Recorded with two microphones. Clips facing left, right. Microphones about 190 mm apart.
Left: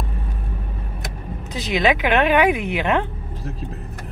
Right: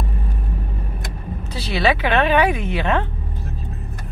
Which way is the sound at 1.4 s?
15° left (ahead or behind).